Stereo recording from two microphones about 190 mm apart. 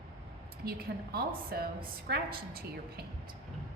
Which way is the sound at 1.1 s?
55° right (ahead or behind).